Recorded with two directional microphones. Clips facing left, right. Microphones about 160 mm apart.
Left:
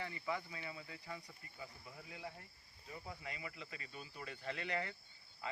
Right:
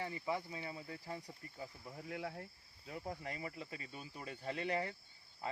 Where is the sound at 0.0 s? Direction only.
30° right (ahead or behind).